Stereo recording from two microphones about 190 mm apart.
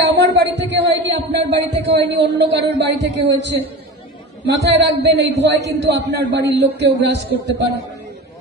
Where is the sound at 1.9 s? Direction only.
65° right (ahead or behind).